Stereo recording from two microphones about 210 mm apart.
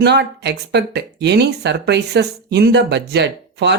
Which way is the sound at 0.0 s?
50° right (ahead or behind).